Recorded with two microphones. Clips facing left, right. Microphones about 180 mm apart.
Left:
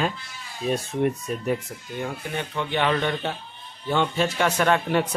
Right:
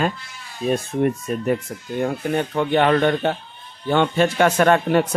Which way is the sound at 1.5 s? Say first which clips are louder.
Right 4 dB; 50° right (ahead or behind).